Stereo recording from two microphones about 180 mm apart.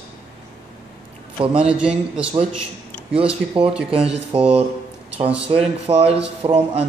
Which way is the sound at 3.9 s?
35° right (ahead or behind).